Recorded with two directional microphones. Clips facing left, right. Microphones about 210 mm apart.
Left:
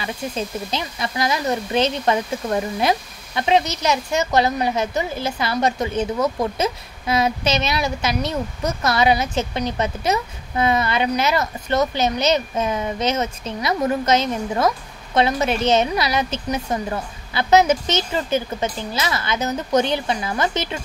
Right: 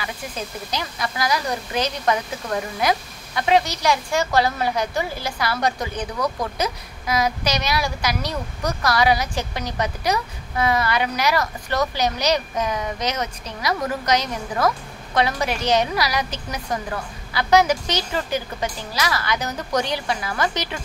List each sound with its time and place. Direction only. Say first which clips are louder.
0.0 s speech: left 5 dB; 25° left (ahead or behind)